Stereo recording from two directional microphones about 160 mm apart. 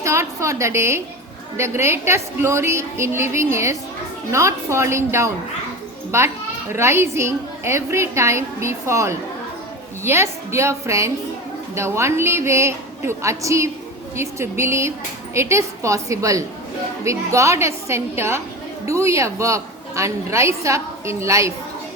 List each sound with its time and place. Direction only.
0.0 s a woman's voice: 20° right (ahead or behind)